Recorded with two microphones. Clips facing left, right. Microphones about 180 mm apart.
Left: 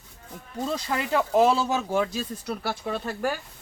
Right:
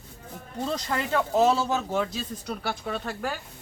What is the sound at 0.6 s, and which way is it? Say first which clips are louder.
Speech: left 1 dB; 5° left (ahead or behind).